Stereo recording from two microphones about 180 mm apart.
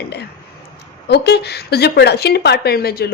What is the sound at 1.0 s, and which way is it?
A woman's voice, 65° left (ahead or behind).